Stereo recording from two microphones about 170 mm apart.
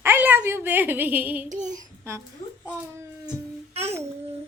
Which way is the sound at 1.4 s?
45° right (ahead or behind).